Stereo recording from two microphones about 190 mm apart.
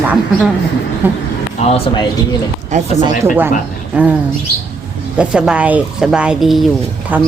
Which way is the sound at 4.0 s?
10° right (ahead or behind).